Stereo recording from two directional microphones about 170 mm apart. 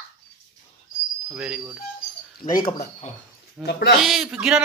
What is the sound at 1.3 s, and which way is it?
Speech, 5° right (ahead or behind).